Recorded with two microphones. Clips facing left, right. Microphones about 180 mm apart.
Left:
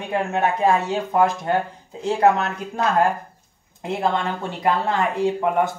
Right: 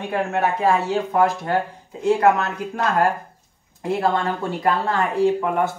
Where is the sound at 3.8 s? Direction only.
20° left (ahead or behind).